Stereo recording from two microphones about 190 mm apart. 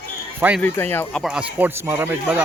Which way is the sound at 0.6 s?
10° left (ahead or behind).